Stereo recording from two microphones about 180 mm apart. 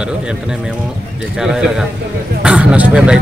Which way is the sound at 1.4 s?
5° right (ahead or behind).